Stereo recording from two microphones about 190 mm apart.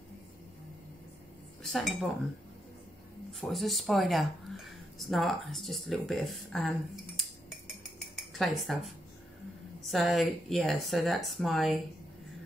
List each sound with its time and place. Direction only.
1.6 s speech: centre (ahead or behind)
3.3 s speech: centre (ahead or behind)
8.2 s cutlery: centre (ahead or behind)
9.8 s speech: centre (ahead or behind)